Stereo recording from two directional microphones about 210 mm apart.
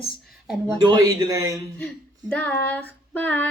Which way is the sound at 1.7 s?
5° left (ahead or behind).